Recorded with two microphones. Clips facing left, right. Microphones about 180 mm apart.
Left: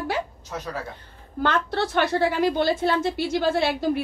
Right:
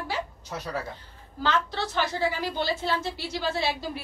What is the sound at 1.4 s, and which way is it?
A woman's voice, 60° left (ahead or behind).